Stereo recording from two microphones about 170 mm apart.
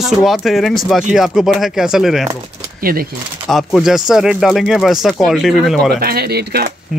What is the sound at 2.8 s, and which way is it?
Speech, 60° right (ahead or behind).